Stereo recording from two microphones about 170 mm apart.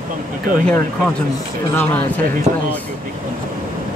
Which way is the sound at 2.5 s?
40° right (ahead or behind).